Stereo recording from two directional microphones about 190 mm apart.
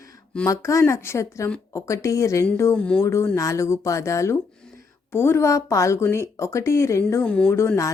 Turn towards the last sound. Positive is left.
turn(degrees=15)  # may be behind; listen again after turning